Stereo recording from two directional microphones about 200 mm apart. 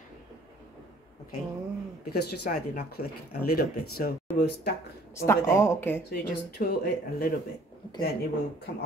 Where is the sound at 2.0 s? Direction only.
50° left (ahead or behind).